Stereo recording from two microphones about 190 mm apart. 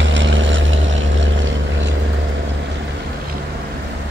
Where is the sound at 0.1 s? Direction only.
75° right (ahead or behind).